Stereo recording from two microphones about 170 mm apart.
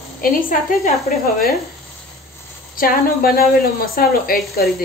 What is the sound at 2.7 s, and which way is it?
A woman's voice, 60° left (ahead or behind).